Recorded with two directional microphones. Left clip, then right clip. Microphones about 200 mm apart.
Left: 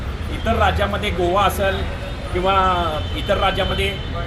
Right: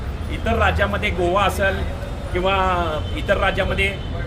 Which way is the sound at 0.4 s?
10° right (ahead or behind).